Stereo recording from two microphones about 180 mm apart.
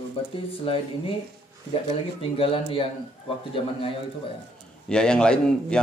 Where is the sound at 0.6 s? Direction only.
30° left (ahead or behind).